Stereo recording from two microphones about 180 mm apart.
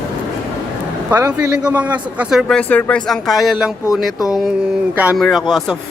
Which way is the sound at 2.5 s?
5° left (ahead or behind).